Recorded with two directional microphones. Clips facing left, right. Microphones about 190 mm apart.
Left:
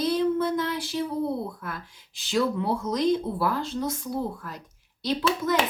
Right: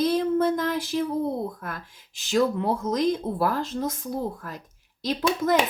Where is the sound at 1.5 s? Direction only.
45° right (ahead or behind).